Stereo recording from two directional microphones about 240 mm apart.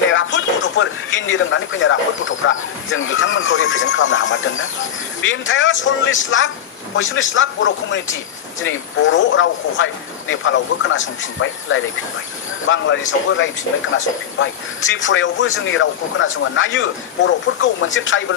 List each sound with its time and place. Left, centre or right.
0.1 s music: left
1.3 s speech: left